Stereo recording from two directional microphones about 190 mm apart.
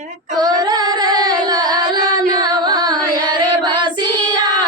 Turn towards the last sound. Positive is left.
turn(degrees=-25)  # may be behind; listen again after turning